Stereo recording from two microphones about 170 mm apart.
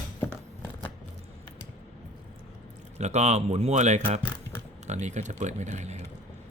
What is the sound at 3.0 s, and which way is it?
Speech, 40° right (ahead or behind).